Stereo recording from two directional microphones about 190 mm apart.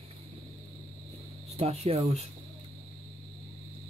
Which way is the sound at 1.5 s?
35° right (ahead or behind).